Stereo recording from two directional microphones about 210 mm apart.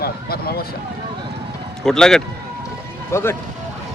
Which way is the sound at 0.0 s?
50° left (ahead or behind).